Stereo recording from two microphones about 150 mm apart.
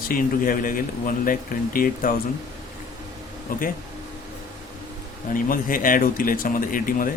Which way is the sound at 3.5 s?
70° left (ahead or behind).